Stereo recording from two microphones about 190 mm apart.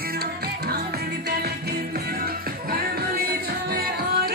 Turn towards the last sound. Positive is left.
turn(degrees=-55)  # may be behind; listen again after turning